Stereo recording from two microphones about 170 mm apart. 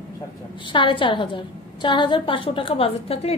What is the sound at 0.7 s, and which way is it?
A woman's voice, 30° left (ahead or behind).